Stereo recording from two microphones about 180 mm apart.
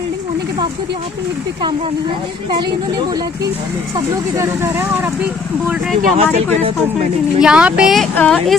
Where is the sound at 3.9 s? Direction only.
20° right (ahead or behind).